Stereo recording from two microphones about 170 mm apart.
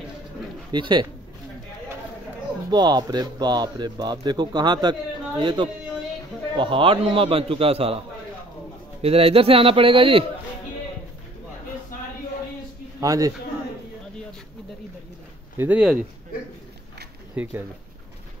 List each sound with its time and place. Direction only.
0.7 s a man's voice: 25° right (ahead or behind)
2.7 s a man's voice: 25° right (ahead or behind)
9.0 s a man's voice: 35° right (ahead or behind)
13.0 s a man's voice: 20° right (ahead or behind)
15.5 s speech: 10° right (ahead or behind)
17.4 s speech: 15° right (ahead or behind)